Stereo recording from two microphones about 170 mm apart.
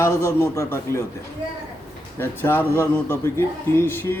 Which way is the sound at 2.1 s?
10° left (ahead or behind).